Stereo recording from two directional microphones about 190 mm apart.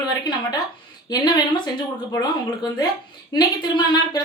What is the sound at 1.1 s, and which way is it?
Speech, 20° left (ahead or behind).